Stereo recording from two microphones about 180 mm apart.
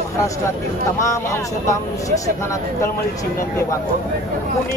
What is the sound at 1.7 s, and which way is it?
Speech, 20° left (ahead or behind).